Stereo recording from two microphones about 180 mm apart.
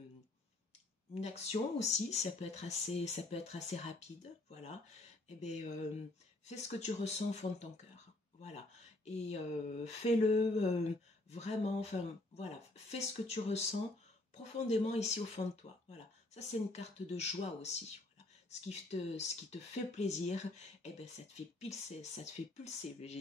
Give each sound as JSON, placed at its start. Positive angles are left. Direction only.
{"t": 1.1, "sound": "speech", "side_deg": 35}
{"t": 9.0, "sound": "speech", "side_deg": 35}